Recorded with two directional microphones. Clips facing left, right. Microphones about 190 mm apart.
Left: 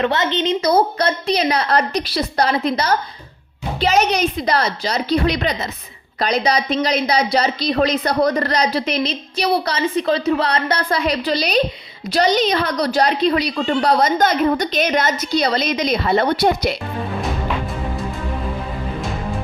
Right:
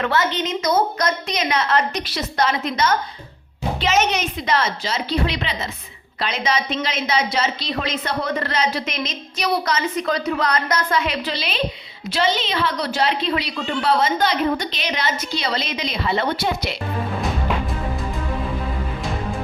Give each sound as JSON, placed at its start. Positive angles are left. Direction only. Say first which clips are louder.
{"t": 0.0, "sound": "a woman's voice", "louder": "left 3 dB", "side_deg": 20}